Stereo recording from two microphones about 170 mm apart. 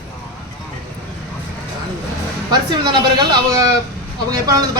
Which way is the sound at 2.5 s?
25° right (ahead or behind).